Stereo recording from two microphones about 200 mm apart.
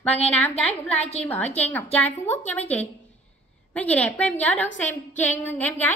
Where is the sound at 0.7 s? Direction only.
30° left (ahead or behind).